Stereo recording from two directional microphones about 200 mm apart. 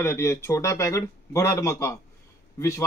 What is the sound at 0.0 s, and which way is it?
Speech, 15° left (ahead or behind).